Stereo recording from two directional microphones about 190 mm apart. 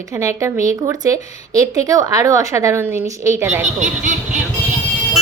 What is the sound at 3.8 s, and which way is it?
Speech, 40° right (ahead or behind).